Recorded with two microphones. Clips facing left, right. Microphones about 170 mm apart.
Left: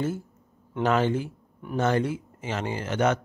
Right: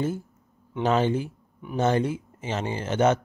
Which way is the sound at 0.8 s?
20° right (ahead or behind).